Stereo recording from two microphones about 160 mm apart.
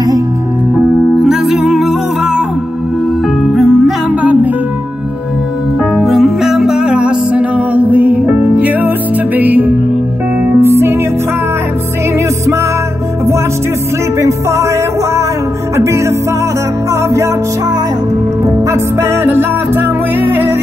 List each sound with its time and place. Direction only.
0.7 s music: 5° right (ahead or behind)
3.5 s music: centre (ahead or behind)
5.9 s music: centre (ahead or behind); by 11.0 s 15° right (ahead or behind)
15.7 s music: 20° right (ahead or behind)
18.4 s music: 20° right (ahead or behind)